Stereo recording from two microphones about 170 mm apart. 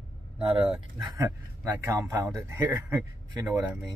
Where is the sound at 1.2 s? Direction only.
15° right (ahead or behind).